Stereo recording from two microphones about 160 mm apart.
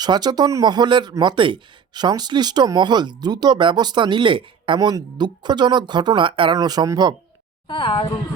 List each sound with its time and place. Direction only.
0.0 s speech: 25° right (ahead or behind)
7.7 s speech: 30° left (ahead or behind)